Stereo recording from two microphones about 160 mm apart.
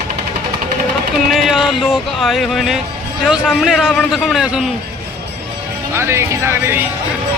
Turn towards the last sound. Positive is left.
turn(degrees=-15)  # may be behind; listen again after turning